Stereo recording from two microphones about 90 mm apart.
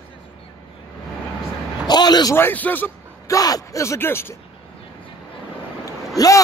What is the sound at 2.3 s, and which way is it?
Speech, 20° left (ahead or behind).